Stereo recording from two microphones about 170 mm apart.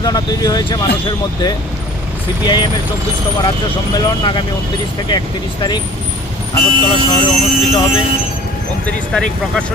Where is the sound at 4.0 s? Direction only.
25° left (ahead or behind).